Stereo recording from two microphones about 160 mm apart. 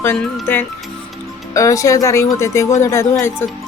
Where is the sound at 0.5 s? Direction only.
15° left (ahead or behind).